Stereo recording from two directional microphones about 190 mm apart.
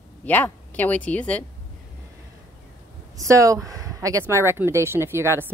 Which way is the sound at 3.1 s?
15° right (ahead or behind).